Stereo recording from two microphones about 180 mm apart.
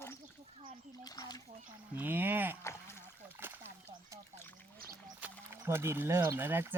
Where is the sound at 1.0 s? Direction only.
20° left (ahead or behind).